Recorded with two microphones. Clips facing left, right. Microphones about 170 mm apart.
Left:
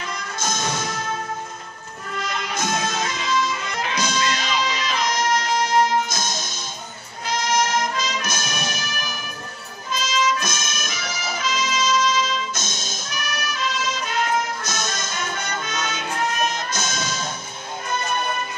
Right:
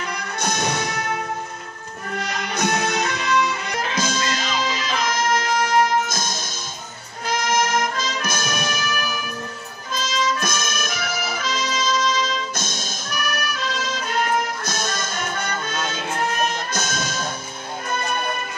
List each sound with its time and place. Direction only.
0.1 s music: 65° right (ahead or behind)
2.0 s music: 60° right (ahead or behind)
9.9 s trumpet: 55° right (ahead or behind)
12.5 s music: 55° right (ahead or behind)